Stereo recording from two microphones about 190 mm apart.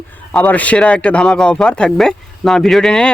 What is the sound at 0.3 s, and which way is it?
Speech, 10° left (ahead or behind).